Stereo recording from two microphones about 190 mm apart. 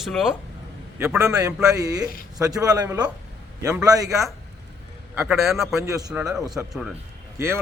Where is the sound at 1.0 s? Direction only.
15° right (ahead or behind).